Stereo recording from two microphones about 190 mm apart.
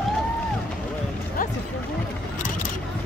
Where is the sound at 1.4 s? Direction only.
45° left (ahead or behind).